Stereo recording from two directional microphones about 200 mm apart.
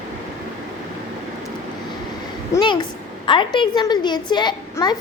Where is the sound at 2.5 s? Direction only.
20° left (ahead or behind).